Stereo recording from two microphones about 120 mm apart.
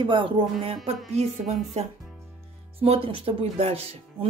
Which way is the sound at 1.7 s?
70° right (ahead or behind).